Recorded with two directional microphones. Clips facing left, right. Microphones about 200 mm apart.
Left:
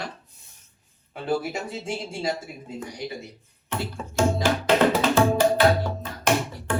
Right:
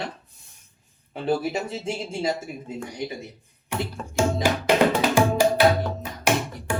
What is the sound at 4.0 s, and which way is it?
Music, centre (ahead or behind).